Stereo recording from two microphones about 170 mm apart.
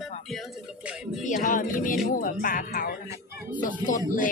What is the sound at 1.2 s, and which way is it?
Speech, 50° left (ahead or behind).